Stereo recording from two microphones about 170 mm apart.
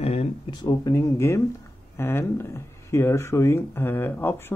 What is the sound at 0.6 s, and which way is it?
Speech, 20° left (ahead or behind).